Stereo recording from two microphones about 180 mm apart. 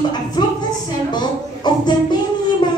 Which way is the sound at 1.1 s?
25° left (ahead or behind).